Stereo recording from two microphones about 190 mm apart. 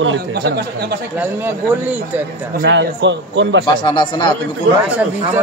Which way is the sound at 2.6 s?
70° right (ahead or behind).